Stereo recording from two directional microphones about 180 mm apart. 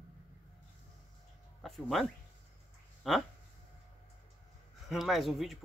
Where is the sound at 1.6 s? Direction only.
Centre (ahead or behind).